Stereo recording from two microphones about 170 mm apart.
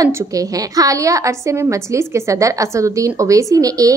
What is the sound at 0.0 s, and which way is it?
A woman's voice, 20° right (ahead or behind).